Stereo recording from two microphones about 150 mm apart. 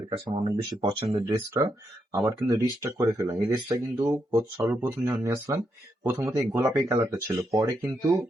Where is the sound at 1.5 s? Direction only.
20° right (ahead or behind).